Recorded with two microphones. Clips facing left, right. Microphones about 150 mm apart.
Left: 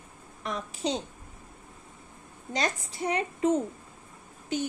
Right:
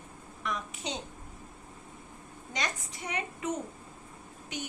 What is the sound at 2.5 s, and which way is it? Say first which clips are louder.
Speech: left 6 dB; 30° left (ahead or behind).